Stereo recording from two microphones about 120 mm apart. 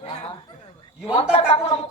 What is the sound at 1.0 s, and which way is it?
Speech, 55° left (ahead or behind).